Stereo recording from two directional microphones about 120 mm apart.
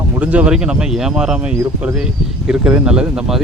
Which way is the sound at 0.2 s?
10° right (ahead or behind).